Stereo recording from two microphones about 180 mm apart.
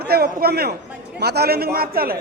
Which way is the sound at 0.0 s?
60° right (ahead or behind).